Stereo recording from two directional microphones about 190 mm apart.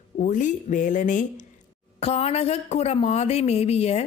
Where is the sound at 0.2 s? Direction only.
40° left (ahead or behind).